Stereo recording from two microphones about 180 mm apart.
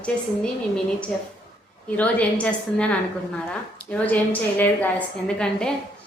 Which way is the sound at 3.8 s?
5° left (ahead or behind).